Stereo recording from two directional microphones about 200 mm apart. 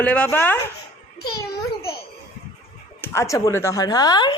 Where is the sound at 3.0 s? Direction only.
10° left (ahead or behind).